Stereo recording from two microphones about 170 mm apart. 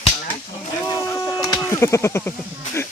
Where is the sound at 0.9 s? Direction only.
20° left (ahead or behind).